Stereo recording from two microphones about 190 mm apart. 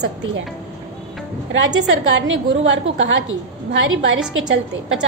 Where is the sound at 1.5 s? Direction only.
75° right (ahead or behind).